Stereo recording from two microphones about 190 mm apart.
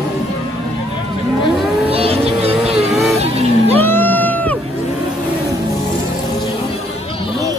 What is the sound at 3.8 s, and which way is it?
Music, 10° left (ahead or behind).